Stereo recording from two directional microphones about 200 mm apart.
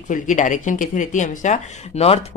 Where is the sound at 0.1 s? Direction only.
40° left (ahead or behind).